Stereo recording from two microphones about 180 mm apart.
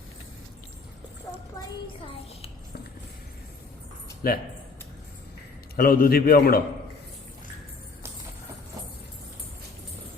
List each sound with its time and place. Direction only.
4.2 s a man's voice: 55° left (ahead or behind)
5.7 s a man's voice: 55° left (ahead or behind)